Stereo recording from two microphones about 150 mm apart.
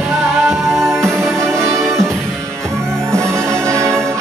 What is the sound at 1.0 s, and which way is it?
Music, 20° right (ahead or behind).